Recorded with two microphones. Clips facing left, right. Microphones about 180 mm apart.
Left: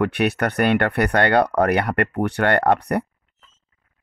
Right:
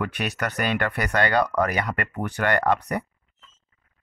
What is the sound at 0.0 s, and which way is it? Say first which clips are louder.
Speech: left 8 dB; 65° left (ahead or behind).